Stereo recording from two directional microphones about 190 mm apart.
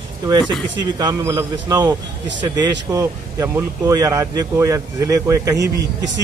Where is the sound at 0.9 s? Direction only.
15° right (ahead or behind).